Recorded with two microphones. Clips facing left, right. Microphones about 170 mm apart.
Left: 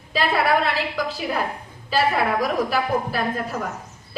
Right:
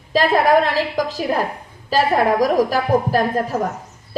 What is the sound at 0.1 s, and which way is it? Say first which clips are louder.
A woman's voice: right 6 dB; 40° right (ahead or behind).